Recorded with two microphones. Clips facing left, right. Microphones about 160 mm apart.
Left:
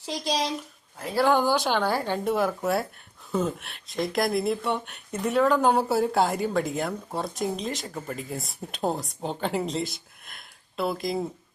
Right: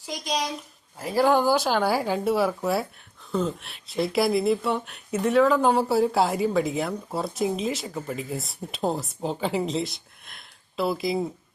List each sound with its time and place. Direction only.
0.0 s speech: 30° left (ahead or behind)
0.9 s speech: 5° right (ahead or behind)